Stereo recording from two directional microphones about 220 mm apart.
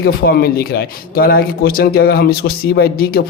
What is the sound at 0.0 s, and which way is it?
A man's voice, 45° left (ahead or behind).